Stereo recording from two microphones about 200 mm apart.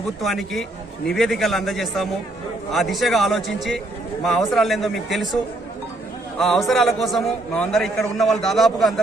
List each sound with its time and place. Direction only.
0.2 s a man's voice: centre (ahead or behind)
6.4 s a man's voice: centre (ahead or behind)